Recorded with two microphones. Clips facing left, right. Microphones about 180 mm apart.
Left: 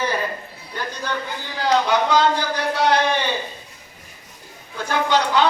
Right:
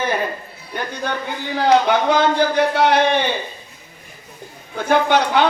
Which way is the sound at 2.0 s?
55° right (ahead or behind).